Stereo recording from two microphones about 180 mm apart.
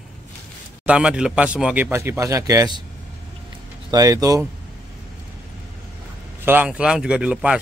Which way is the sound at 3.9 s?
20° right (ahead or behind).